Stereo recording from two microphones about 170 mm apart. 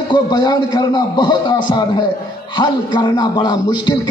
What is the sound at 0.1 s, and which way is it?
A man's voice, 25° left (ahead or behind).